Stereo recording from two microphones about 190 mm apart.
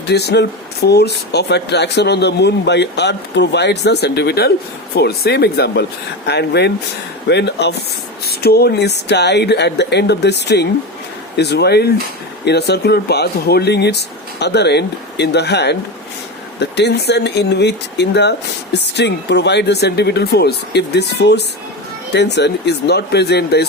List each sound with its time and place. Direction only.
0.1 s speech: 60° left (ahead or behind)